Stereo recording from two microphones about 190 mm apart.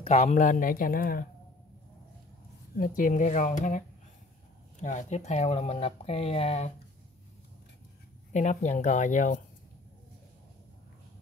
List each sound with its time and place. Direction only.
0.0 s speech: 35° left (ahead or behind)
2.7 s speech: 45° left (ahead or behind)
8.3 s speech: 40° left (ahead or behind)